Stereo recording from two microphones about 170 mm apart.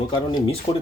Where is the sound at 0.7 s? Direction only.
25° left (ahead or behind).